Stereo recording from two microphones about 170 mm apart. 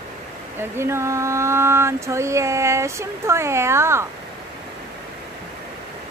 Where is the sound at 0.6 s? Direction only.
15° right (ahead or behind).